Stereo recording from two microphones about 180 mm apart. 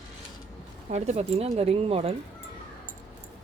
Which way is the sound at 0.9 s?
40° right (ahead or behind).